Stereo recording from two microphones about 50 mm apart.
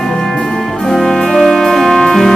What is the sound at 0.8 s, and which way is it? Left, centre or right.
Music, centre.